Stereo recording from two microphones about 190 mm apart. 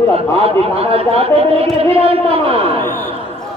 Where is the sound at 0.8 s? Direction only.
30° right (ahead or behind).